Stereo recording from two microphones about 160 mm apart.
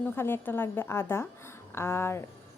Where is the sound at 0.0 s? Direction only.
15° left (ahead or behind).